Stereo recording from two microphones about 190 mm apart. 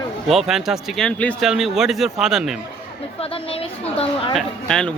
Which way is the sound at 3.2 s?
30° left (ahead or behind).